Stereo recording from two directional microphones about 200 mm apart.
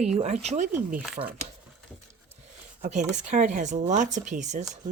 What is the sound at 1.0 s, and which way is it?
Speech, centre (ahead or behind).